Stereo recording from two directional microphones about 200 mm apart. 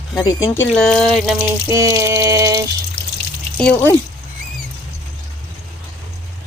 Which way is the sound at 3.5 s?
10° left (ahead or behind).